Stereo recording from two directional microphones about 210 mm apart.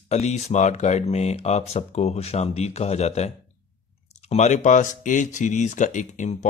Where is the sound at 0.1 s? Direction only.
35° left (ahead or behind).